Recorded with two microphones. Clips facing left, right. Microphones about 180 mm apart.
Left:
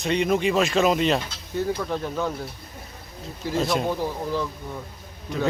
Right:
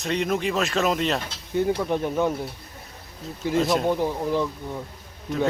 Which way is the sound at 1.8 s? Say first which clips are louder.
Right 4 dB; 15° right (ahead or behind).